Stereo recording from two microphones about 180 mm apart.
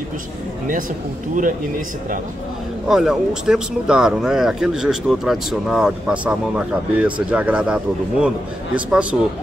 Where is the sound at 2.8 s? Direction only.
Centre (ahead or behind).